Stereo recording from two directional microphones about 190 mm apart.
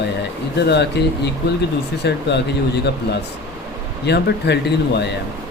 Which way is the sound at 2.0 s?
65° left (ahead or behind).